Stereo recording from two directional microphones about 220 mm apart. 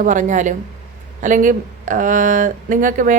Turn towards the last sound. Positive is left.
turn(degrees=-35)  # may be behind; listen again after turning